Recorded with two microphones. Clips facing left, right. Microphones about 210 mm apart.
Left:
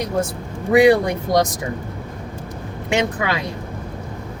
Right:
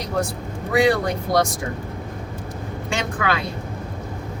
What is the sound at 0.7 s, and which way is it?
Speech, 20° left (ahead or behind).